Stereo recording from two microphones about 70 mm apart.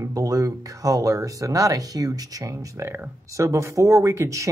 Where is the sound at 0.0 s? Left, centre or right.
Right.